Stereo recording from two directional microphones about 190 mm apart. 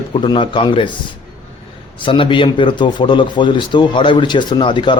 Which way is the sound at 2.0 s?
25° left (ahead or behind).